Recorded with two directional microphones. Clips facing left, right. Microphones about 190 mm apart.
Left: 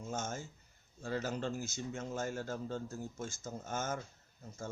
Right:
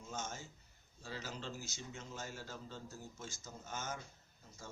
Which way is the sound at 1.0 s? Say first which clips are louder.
Left 9 dB; 50° left (ahead or behind).